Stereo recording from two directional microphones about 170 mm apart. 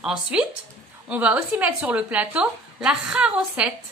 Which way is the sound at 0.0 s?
5° right (ahead or behind).